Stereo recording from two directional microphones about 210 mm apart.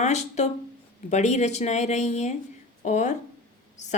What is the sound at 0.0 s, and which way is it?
Speech, 35° left (ahead or behind).